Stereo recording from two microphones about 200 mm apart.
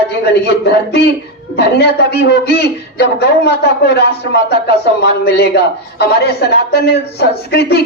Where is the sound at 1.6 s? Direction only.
55° left (ahead or behind).